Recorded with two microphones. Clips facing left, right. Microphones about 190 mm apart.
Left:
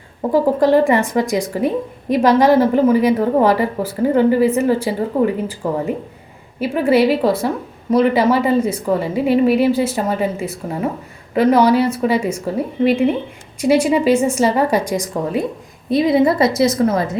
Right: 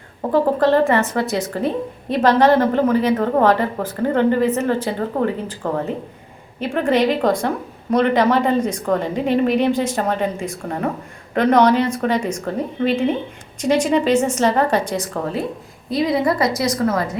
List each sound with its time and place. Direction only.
0.3 s a woman's voice: 10° left (ahead or behind)
15.9 s a woman's voice: 25° left (ahead or behind)